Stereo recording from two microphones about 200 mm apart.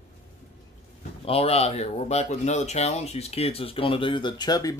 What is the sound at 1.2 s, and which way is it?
Speech, 30° left (ahead or behind).